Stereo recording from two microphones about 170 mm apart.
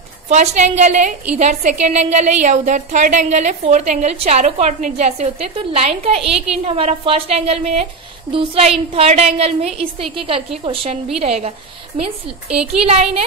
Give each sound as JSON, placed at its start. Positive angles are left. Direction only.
{"t": 0.3, "sound": "a woman's voice", "side_deg": -40}
{"t": 12.5, "sound": "a woman's voice", "side_deg": -35}